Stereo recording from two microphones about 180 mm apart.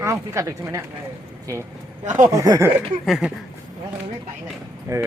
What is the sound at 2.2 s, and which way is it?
Speech, 20° right (ahead or behind).